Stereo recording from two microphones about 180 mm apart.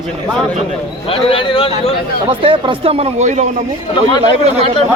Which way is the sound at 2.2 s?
30° right (ahead or behind).